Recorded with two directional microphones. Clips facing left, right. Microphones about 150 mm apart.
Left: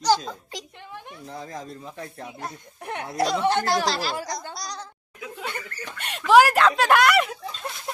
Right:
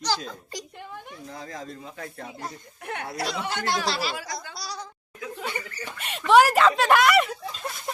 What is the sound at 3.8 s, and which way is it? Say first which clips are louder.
Speech: left 2 dB; 5° right (ahead or behind).